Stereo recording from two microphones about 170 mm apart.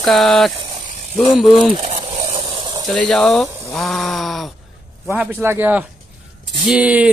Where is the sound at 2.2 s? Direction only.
25° right (ahead or behind).